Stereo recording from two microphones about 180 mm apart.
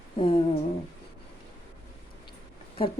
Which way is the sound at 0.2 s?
30° left (ahead or behind).